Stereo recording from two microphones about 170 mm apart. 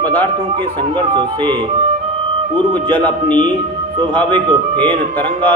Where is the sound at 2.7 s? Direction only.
10° left (ahead or behind).